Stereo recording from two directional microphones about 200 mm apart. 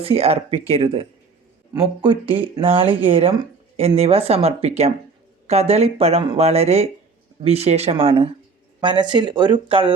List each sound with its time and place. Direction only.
0.0 s speech: 30° right (ahead or behind)